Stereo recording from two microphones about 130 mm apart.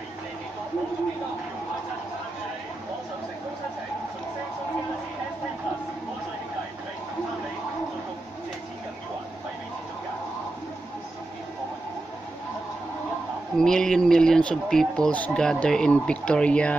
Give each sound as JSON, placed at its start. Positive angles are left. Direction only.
{"t": 13.6, "sound": "speech", "side_deg": 5}